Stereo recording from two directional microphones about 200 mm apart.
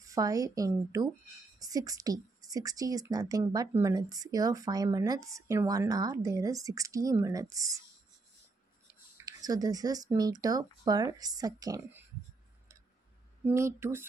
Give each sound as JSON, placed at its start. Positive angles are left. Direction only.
{"t": 0.0, "sound": "a woman's voice", "side_deg": -15}
{"t": 9.2, "sound": "speech", "side_deg": -20}
{"t": 13.5, "sound": "a woman's voice", "side_deg": -15}